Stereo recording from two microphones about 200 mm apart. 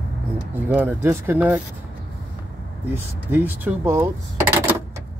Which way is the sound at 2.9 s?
10° right (ahead or behind).